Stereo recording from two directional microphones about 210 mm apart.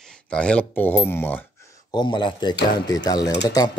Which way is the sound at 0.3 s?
5° left (ahead or behind).